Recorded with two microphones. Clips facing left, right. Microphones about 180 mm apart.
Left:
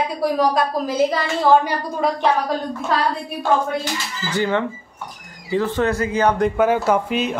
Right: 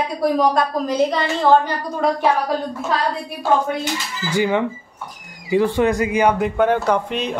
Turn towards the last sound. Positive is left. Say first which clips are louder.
# left 1 dB
turn(degrees=5)  # may be behind; listen again after turning